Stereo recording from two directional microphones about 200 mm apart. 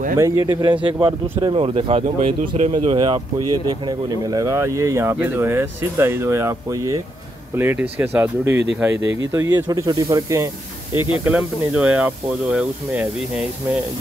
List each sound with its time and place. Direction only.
0.2 s speech: 15° right (ahead or behind)
11.2 s speech: 5° right (ahead or behind)